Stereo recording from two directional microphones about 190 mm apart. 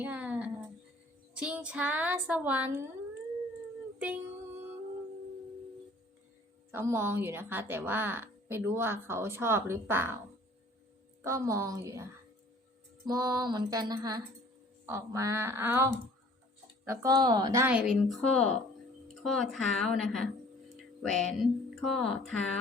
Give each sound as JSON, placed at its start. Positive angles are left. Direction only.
{"t": 0.0, "sound": "a sound", "side_deg": -10}
{"t": 1.4, "sound": "speech", "side_deg": -5}
{"t": 3.9, "sound": "music", "side_deg": -5}
{"t": 6.7, "sound": "speech", "side_deg": -15}
{"t": 11.2, "sound": "speech", "side_deg": -15}
{"t": 13.1, "sound": "music", "side_deg": -20}
{"t": 14.8, "sound": "speech", "side_deg": -15}
{"t": 20.7, "sound": "music", "side_deg": 0}